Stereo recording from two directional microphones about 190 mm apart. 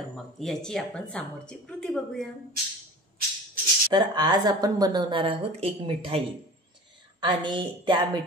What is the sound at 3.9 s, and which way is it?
A woman's voice, 20° right (ahead or behind).